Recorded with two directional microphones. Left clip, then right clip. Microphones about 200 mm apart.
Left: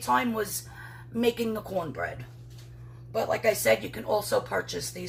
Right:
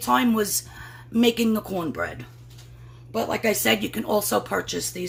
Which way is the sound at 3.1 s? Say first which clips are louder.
Right 2 dB; 55° right (ahead or behind).